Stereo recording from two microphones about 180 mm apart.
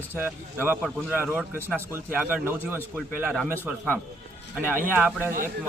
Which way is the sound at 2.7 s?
5° left (ahead or behind).